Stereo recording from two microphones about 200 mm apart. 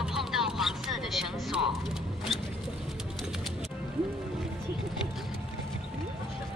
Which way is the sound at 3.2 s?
Centre (ahead or behind).